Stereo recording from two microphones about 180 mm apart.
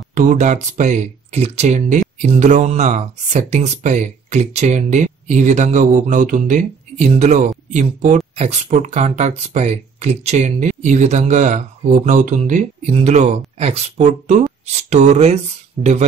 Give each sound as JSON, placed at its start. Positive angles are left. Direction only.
{"t": 0.1, "sound": "speech", "side_deg": -45}